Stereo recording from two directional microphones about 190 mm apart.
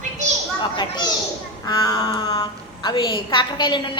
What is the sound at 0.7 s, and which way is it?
A woman's voice, 20° left (ahead or behind).